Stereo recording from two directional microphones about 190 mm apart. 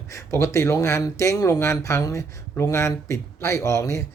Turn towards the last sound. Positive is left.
turn(degrees=15)  # may be behind; listen again after turning